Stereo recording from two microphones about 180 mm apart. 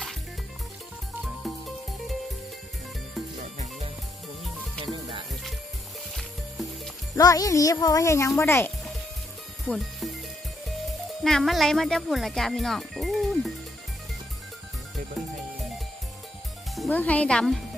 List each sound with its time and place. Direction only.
3.2 s music: centre (ahead or behind)
6.1 s music: centre (ahead or behind)
7.2 s speech: 20° left (ahead or behind)
9.7 s speech: centre (ahead or behind)
16.7 s speech: 5° left (ahead or behind)